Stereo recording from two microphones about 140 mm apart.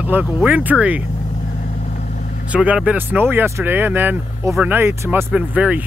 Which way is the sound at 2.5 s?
10° right (ahead or behind).